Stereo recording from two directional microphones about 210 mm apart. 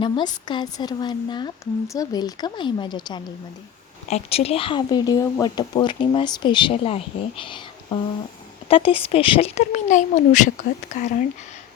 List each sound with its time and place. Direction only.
0.0 s speech: 20° left (ahead or behind)